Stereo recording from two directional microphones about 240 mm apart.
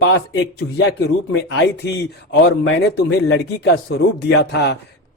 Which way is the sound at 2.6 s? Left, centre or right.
Left.